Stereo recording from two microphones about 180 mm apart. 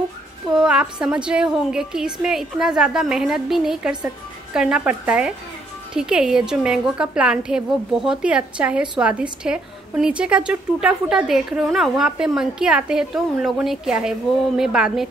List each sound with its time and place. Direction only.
0.5 s a woman's voice: 5° right (ahead or behind)